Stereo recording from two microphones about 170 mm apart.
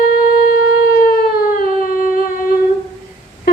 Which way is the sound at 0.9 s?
65° left (ahead or behind).